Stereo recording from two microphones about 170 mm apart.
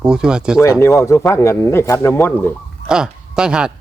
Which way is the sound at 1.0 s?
15° left (ahead or behind).